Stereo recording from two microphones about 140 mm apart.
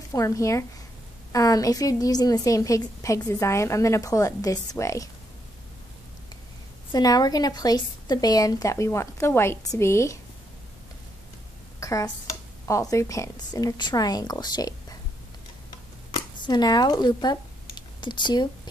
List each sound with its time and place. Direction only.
0.1 s a woman's voice: 25° left (ahead or behind)
6.9 s a woman's voice: 30° left (ahead or behind)
11.8 s speech: 25° left (ahead or behind)
16.1 s a sound: 30° left (ahead or behind)